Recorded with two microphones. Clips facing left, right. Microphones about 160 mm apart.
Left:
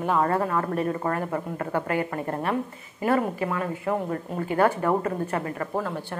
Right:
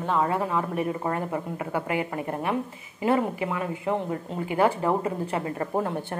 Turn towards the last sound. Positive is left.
turn(degrees=-25)  # may be behind; listen again after turning